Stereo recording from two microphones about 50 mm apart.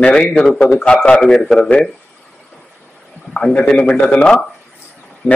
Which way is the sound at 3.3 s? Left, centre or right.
Left.